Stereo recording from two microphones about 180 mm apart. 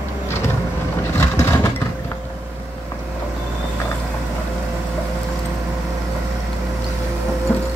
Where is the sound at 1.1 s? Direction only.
15° left (ahead or behind).